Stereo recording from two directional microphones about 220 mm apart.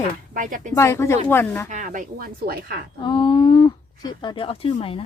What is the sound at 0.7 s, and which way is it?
Speech, 10° left (ahead or behind).